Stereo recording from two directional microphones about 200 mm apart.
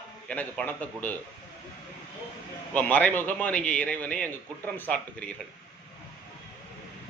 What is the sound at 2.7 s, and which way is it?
A man's voice, 5° left (ahead or behind).